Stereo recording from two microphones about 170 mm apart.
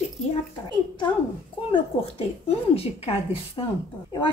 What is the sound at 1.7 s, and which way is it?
Speech, 35° left (ahead or behind).